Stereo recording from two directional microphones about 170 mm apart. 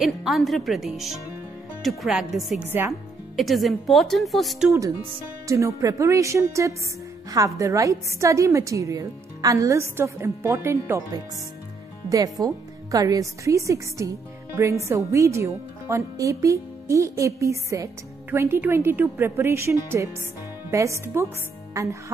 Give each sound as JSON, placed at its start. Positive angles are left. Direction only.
{"t": 0.0, "sound": "speech", "side_deg": 0}
{"t": 2.6, "sound": "a woman's voice", "side_deg": -10}
{"t": 2.9, "sound": "speech", "side_deg": 0}
{"t": 5.5, "sound": "a woman's voice", "side_deg": -20}